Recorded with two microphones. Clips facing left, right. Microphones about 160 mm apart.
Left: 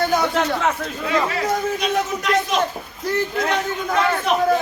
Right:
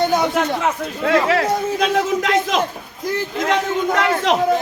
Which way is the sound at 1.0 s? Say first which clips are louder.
Right 5 dB; 85° right.